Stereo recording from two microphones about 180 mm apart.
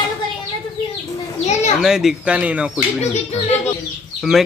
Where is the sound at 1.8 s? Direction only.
5° right (ahead or behind).